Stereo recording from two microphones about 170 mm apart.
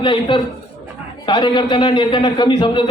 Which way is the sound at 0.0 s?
30° left (ahead or behind).